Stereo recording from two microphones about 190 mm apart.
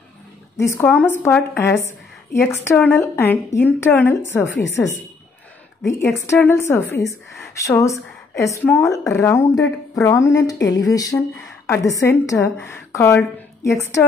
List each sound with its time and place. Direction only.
0.6 s a woman's voice: 15° left (ahead or behind)
5.9 s a woman's voice: 15° left (ahead or behind)